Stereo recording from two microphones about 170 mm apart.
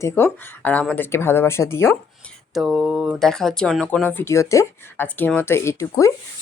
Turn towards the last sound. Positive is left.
turn(degrees=20)  # may be behind; listen again after turning